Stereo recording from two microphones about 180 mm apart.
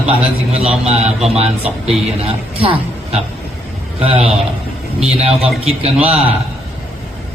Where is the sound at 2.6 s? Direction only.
30° right (ahead or behind).